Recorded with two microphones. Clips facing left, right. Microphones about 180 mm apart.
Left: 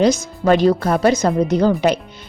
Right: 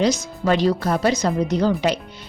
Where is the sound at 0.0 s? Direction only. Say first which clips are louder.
Left 4 dB; 50° left (ahead or behind).